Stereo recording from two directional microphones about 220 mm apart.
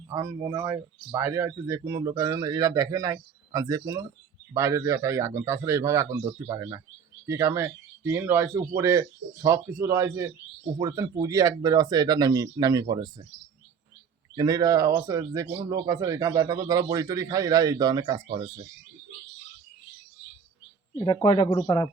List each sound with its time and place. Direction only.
0.1 s a man's voice: 15° right (ahead or behind)
14.3 s a man's voice: 15° right (ahead or behind)
21.0 s speech: 20° left (ahead or behind)